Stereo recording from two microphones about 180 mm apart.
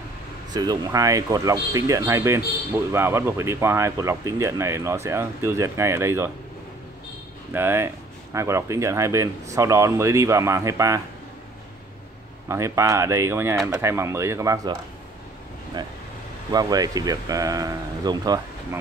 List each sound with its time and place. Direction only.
0.5 s speech: 20° right (ahead or behind)
7.5 s speech: 15° right (ahead or behind)
12.4 s speech: 15° right (ahead or behind)
16.5 s speech: 20° right (ahead or behind)